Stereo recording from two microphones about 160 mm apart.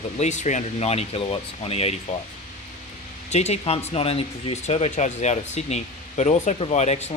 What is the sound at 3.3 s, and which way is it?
Speech, 45° left (ahead or behind).